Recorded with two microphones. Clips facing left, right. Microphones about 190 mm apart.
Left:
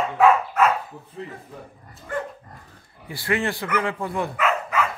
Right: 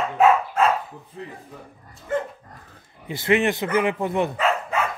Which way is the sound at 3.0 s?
20° right (ahead or behind).